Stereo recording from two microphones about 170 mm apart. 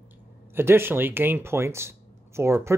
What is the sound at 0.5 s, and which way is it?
Speech, 15° right (ahead or behind).